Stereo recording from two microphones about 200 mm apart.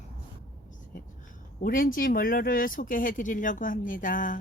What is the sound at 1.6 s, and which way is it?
Speech, 45° left (ahead or behind).